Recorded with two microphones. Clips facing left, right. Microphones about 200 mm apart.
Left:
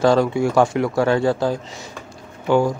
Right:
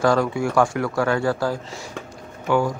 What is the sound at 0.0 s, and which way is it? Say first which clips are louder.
Speech: left 3 dB; 25° left (ahead or behind).